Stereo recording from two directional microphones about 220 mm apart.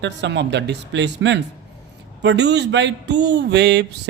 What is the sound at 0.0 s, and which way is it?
A man's voice, 50° right (ahead or behind).